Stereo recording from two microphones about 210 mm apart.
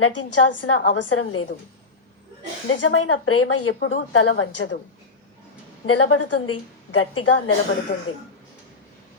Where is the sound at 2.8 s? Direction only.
85° left; by 4.7 s 65° left (ahead or behind).